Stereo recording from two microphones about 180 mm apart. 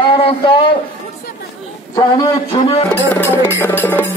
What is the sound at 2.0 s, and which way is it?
Speech, 30° left (ahead or behind).